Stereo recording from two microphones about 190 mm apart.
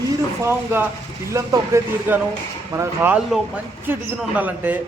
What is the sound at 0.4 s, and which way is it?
A man's voice, 10° right (ahead or behind).